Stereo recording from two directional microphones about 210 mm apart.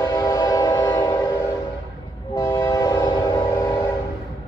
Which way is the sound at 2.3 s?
10° left (ahead or behind).